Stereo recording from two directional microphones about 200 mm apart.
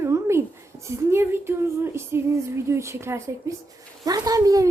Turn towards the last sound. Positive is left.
turn(degrees=-15)  # may be behind; listen again after turning